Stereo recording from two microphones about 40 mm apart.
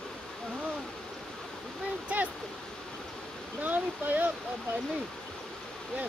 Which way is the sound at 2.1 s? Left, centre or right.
Right.